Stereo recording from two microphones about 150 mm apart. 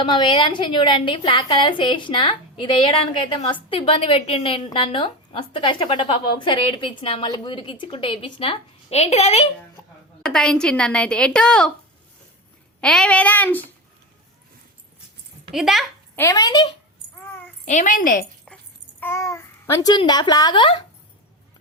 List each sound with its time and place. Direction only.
0.0 s a woman's voice: 35° left (ahead or behind)
9.8 s a sound: 20° left (ahead or behind)
10.2 s a woman's voice: 5° left (ahead or behind)
12.8 s speech: 5° left (ahead or behind)
15.5 s a woman's voice: 5° right (ahead or behind)
16.1 s a woman's voice: 20° left (ahead or behind)
17.7 s a woman's voice: 55° left (ahead or behind)
18.4 s babbling: 10° left (ahead or behind)
20.0 s a woman's voice: 30° left (ahead or behind)